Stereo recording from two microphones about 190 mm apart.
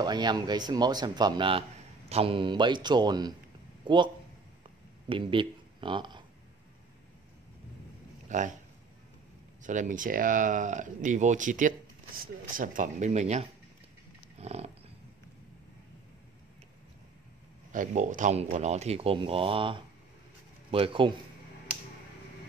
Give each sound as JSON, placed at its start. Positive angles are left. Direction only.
{"t": 0.0, "sound": "speech", "side_deg": -20}
{"t": 5.1, "sound": "speech", "side_deg": -25}
{"t": 8.3, "sound": "speech", "side_deg": -40}
{"t": 9.6, "sound": "speech", "side_deg": -40}
{"t": 14.4, "sound": "dog", "side_deg": -35}
{"t": 17.7, "sound": "speech", "side_deg": -40}